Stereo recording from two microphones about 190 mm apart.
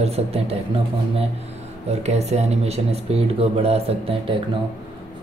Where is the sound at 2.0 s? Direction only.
35° right (ahead or behind).